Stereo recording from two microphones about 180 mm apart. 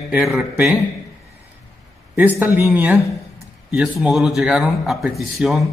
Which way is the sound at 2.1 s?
10° right (ahead or behind).